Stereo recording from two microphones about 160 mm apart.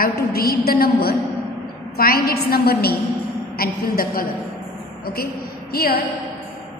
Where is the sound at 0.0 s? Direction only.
70° left (ahead or behind).